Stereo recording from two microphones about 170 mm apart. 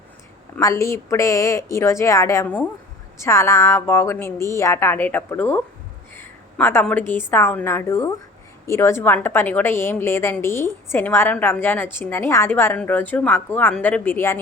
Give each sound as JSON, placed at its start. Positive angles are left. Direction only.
{"t": 0.6, "sound": "a woman's voice", "side_deg": 20}